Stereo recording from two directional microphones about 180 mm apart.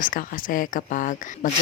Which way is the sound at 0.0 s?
50° left (ahead or behind).